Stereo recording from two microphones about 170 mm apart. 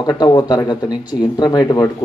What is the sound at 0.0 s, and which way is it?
Speech, 25° left (ahead or behind).